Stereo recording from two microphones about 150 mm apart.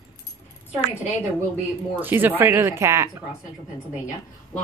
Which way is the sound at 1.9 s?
15° right (ahead or behind).